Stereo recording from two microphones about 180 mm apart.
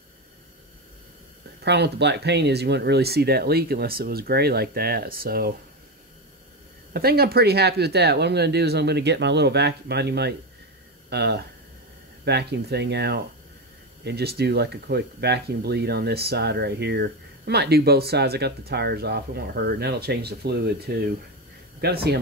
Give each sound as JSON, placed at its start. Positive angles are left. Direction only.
{"t": 1.6, "sound": "speech", "side_deg": -70}
{"t": 6.9, "sound": "speech", "side_deg": -60}